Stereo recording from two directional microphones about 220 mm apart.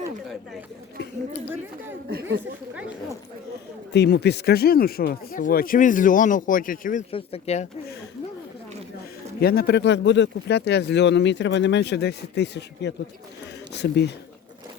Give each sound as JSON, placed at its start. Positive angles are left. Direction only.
{"t": 3.9, "sound": "speech", "side_deg": 50}
{"t": 7.1, "sound": "speech", "side_deg": 25}
{"t": 9.4, "sound": "speech", "side_deg": 45}